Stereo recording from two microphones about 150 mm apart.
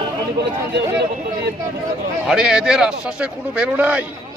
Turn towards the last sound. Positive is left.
turn(degrees=-10)  # may be behind; listen again after turning